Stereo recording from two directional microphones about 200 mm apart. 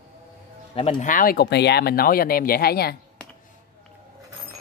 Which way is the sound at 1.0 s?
45° left (ahead or behind).